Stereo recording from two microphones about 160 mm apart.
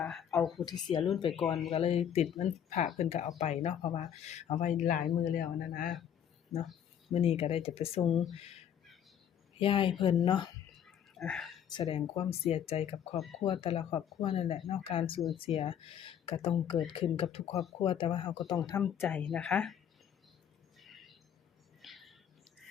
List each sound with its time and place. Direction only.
0.0 s a sound: centre (ahead or behind)
0.3 s speech: centre (ahead or behind)
0.6 s a woman's voice: 25° left (ahead or behind)
1.7 s speech: 40° left (ahead or behind); by 5.9 s 65° left (ahead or behind)
6.5 s speech: centre (ahead or behind)
7.1 s speech: 35° left (ahead or behind)
9.6 s speech: 35° left (ahead or behind)
10.8 s whispering: centre (ahead or behind)
11.9 s a woman's voice: 35° left (ahead or behind)
18.8 s speech: centre (ahead or behind)
20.7 s a sound: centre (ahead or behind)